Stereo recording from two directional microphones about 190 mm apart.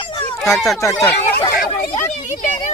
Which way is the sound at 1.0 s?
15° left (ahead or behind).